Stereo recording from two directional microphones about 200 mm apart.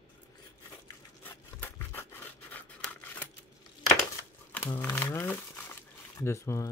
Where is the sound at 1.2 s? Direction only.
10° left (ahead or behind).